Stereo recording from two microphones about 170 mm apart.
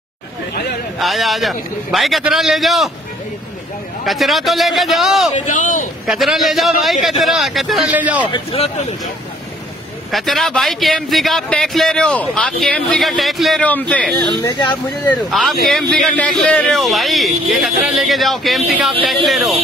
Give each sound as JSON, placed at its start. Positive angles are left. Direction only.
{"t": 0.9, "sound": "a man's voice", "side_deg": 0}
{"t": 4.0, "sound": "a man's voice", "side_deg": 0}
{"t": 5.3, "sound": "speech", "side_deg": 50}
{"t": 6.0, "sound": "a man's voice", "side_deg": 0}
{"t": 8.3, "sound": "speech", "side_deg": 35}
{"t": 10.1, "sound": "a man's voice", "side_deg": 0}
{"t": 14.4, "sound": "speech", "side_deg": 25}
{"t": 15.2, "sound": "a man's voice", "side_deg": 0}